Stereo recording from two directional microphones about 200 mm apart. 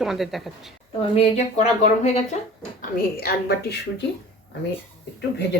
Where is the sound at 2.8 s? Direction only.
50° left (ahead or behind).